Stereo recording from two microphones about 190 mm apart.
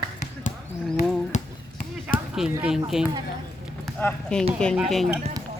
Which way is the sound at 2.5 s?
5° right (ahead or behind).